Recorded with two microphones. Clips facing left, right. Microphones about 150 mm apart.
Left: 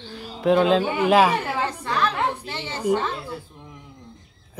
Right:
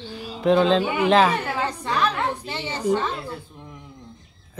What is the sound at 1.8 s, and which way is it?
Music, 15° right (ahead or behind).